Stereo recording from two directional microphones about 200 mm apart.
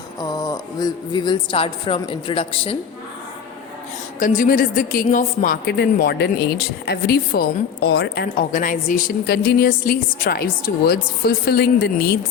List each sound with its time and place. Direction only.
0.2 s speech: 15° left (ahead or behind)
4.2 s speech: 40° left (ahead or behind)